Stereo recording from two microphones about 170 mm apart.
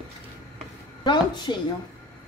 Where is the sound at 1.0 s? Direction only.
25° left (ahead or behind).